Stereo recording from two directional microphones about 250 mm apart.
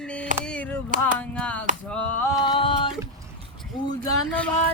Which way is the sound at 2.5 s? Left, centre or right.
Centre.